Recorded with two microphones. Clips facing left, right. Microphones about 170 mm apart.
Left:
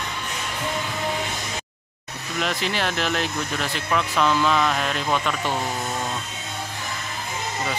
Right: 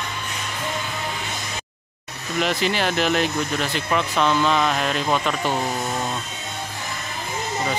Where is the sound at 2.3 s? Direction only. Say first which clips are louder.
Right 4 dB; centre (ahead or behind).